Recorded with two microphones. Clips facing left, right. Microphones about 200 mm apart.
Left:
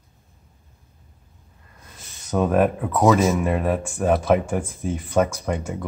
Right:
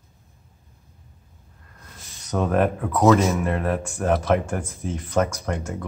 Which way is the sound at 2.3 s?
5° left (ahead or behind).